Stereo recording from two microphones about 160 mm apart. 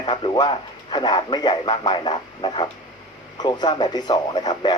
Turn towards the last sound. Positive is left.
turn(degrees=25)  # may be behind; listen again after turning